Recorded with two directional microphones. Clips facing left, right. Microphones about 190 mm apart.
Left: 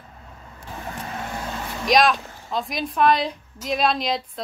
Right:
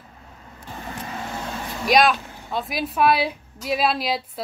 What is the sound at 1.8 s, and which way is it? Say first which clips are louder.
A woman's voice: even; 5° right (ahead or behind).